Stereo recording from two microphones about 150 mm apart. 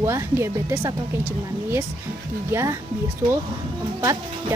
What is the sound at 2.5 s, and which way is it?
Speech, 20° right (ahead or behind).